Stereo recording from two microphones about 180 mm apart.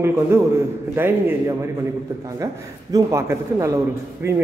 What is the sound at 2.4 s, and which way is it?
A man's voice, 20° right (ahead or behind).